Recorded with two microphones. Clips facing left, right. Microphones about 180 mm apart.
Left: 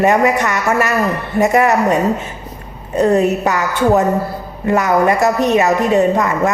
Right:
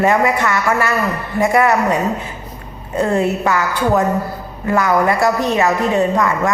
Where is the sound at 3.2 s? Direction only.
20° left (ahead or behind).